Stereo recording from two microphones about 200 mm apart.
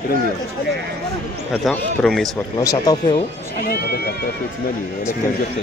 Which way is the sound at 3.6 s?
50° left (ahead or behind).